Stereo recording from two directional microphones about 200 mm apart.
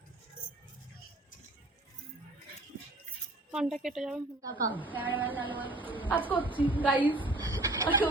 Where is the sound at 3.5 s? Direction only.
5° right (ahead or behind).